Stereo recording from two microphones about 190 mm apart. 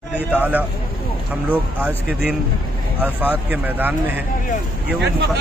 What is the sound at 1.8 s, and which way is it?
Speech, 10° right (ahead or behind).